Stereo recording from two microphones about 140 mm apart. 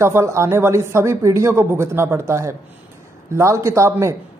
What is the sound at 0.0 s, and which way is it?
Speech, 20° right (ahead or behind).